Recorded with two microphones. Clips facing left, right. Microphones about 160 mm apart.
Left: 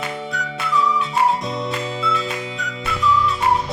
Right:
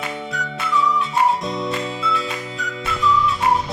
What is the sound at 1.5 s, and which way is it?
Music, centre (ahead or behind).